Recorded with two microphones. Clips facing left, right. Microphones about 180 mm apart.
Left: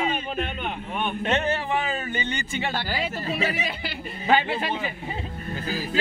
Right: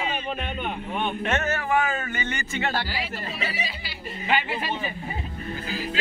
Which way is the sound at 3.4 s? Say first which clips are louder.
Left 4 dB; 55° left (ahead or behind).